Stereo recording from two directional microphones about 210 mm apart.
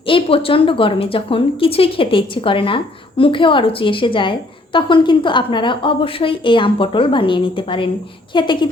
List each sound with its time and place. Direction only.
0.0 s a woman's voice: 25° left (ahead or behind)